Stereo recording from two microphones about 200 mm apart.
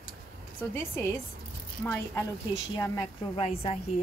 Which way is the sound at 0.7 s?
15° left (ahead or behind).